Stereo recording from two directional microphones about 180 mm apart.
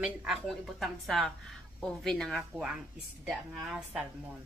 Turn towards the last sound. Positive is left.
turn(degrees=0)  # may be behind; listen again after turning